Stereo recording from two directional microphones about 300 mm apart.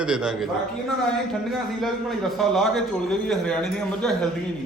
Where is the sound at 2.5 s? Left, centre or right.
Centre.